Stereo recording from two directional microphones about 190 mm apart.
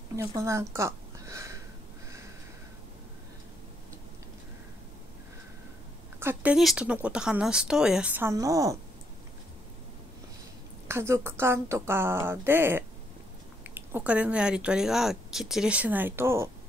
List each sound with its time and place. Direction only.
0.1 s speech: 15° right (ahead or behind)
6.1 s speech: 10° right (ahead or behind)
10.9 s speech: 15° right (ahead or behind)